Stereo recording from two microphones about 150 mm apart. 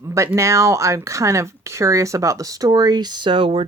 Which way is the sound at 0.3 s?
20° right (ahead or behind).